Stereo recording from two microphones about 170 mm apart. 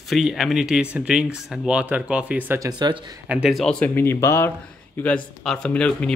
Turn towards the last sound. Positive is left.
turn(degrees=5)  # may be behind; listen again after turning